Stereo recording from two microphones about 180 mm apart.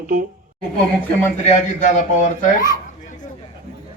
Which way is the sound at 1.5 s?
45° left (ahead or behind).